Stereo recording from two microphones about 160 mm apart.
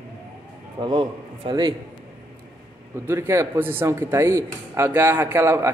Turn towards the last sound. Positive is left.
turn(degrees=-15)  # may be behind; listen again after turning